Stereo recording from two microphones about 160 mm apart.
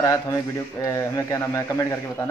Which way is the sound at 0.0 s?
20° left (ahead or behind).